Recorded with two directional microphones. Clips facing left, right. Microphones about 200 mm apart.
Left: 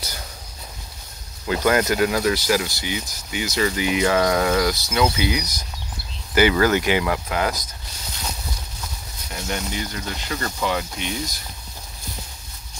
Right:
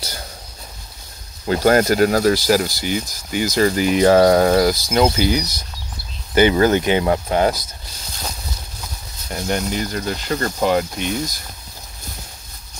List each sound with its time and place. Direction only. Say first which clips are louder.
1.4 s speech: right 5 dB; 35° right (ahead or behind)
6.3 s speech: right 3 dB; 25° right (ahead or behind)
9.4 s speech: right 6 dB; 40° right (ahead or behind)